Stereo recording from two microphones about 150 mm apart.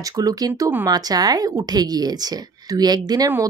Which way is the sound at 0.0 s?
25° right (ahead or behind).